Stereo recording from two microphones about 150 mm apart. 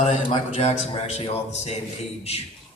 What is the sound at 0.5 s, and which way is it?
Speech, 45° left (ahead or behind).